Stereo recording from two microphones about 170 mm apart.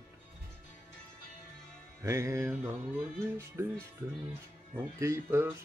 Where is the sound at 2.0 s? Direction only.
15° right (ahead or behind).